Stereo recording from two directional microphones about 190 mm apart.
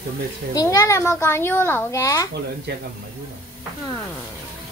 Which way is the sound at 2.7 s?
60° right (ahead or behind).